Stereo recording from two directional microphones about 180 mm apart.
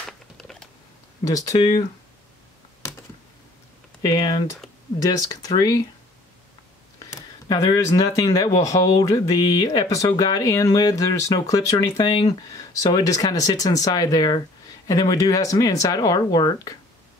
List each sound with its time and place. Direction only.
0.4 s typing: centre (ahead or behind)
1.2 s speech: 20° left (ahead or behind)
4.0 s speech: 20° left (ahead or behind)
7.2 s speech: 20° left (ahead or behind)